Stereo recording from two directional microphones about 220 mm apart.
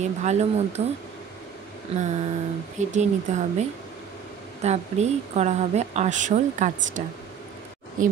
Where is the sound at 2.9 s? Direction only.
30° right (ahead or behind).